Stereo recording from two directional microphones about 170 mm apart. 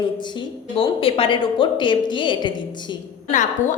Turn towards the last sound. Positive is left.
turn(degrees=45)  # may be behind; listen again after turning